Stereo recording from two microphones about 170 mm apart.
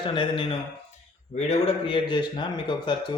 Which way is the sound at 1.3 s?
40° left (ahead or behind).